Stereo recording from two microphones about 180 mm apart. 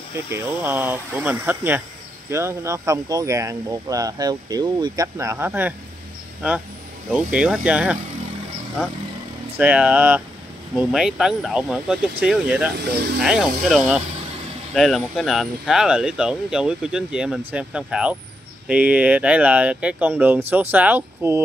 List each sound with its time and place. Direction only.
0.3 s speech: 10° right (ahead or behind)
7.3 s speech: 5° right (ahead or behind)
9.6 s speech: 10° right (ahead or behind)